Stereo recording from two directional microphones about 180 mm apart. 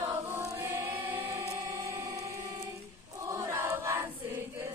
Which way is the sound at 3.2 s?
15° right (ahead or behind).